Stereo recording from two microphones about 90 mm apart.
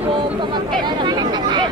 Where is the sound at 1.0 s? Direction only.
55° right (ahead or behind).